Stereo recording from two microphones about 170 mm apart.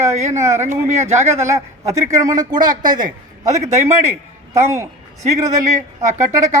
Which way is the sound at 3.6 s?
40° right (ahead or behind).